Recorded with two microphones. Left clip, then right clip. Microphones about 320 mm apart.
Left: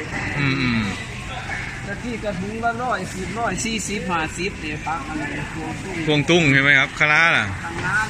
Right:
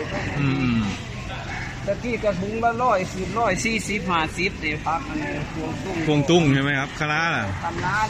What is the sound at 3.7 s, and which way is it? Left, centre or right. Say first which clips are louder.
Speech: right 1 dB; centre.